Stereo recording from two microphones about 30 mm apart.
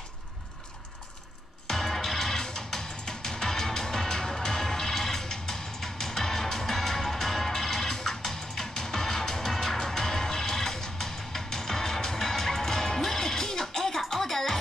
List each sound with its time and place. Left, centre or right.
1.7 s music: centre